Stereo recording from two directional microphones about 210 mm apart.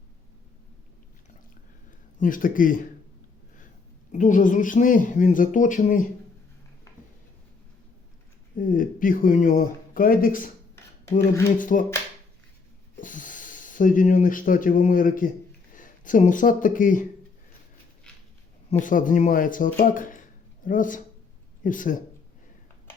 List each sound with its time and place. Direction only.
2.1 s speech: 40° left (ahead or behind)
4.1 s speech: 40° left (ahead or behind)
8.5 s speech: 40° left (ahead or behind)
11.5 s speech: 40° left (ahead or behind)
13.0 s speech: 40° left (ahead or behind)
18.7 s speech: 40° left (ahead or behind)